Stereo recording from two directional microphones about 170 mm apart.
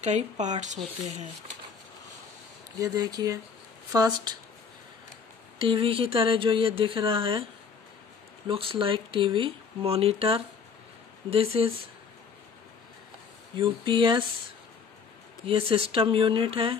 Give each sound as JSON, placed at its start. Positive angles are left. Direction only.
{"t": 0.0, "sound": "speech", "side_deg": -45}
{"t": 2.8, "sound": "speech", "side_deg": -20}
{"t": 5.6, "sound": "speech", "side_deg": -30}
{"t": 8.5, "sound": "speech", "side_deg": -30}
{"t": 13.6, "sound": "speech", "side_deg": -30}
{"t": 15.4, "sound": "speech", "side_deg": -30}